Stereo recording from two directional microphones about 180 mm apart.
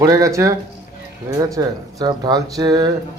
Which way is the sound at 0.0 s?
20° right (ahead or behind).